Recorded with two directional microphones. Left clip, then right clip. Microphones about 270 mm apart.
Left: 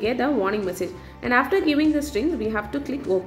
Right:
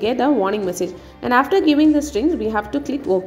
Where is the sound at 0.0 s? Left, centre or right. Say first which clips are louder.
Right 5 dB; centre.